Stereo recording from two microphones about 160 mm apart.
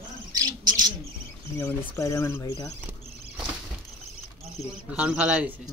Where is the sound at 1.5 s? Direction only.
10° left (ahead or behind).